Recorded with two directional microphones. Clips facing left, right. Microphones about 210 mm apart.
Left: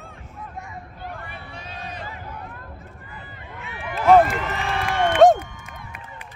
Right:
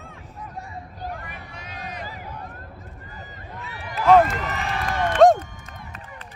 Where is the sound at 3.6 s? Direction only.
40° right (ahead or behind).